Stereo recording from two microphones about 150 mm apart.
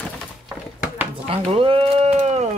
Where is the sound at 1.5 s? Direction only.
40° right (ahead or behind).